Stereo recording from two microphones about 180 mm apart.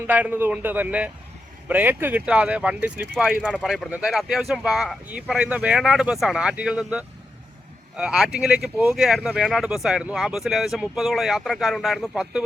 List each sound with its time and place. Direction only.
0.1 s speech: 10° right (ahead or behind)